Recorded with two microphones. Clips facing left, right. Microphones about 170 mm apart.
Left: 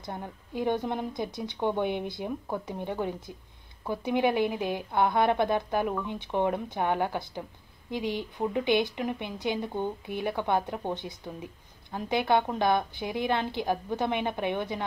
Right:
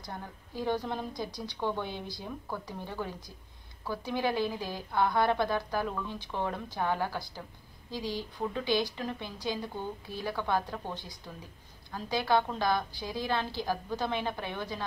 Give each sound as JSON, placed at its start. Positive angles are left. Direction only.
{"t": 0.0, "sound": "a woman's voice", "side_deg": 20}